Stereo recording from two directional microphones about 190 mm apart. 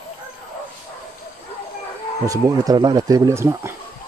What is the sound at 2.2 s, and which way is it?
Speech, 20° right (ahead or behind).